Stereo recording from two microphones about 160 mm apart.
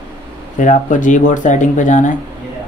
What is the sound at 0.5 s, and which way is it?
Speech, 50° left (ahead or behind).